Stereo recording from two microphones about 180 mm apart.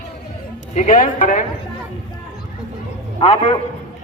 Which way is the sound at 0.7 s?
50° left (ahead or behind).